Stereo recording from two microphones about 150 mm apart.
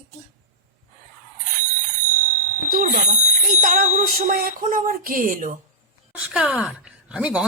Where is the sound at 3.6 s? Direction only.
65° right (ahead or behind).